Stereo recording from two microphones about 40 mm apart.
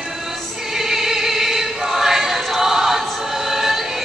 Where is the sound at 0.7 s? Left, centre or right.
Centre.